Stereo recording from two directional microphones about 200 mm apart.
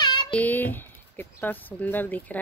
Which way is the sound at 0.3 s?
10° left (ahead or behind).